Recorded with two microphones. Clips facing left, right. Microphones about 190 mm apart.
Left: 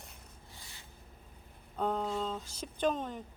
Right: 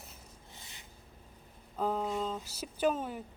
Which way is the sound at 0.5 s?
20° right (ahead or behind).